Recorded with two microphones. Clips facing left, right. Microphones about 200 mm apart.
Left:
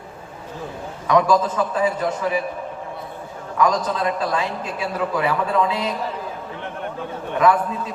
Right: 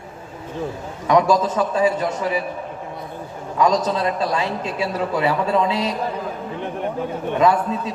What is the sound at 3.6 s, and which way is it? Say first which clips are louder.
A man's voice: right 2 dB; 25° right (ahead or behind).